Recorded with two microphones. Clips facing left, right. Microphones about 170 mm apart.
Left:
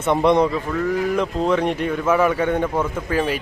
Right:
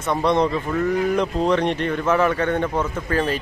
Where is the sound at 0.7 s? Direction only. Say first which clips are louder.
Right 1 dB; centre (ahead or behind).